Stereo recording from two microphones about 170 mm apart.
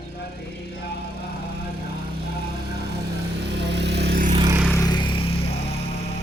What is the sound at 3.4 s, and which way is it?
Vehicle, 90° right.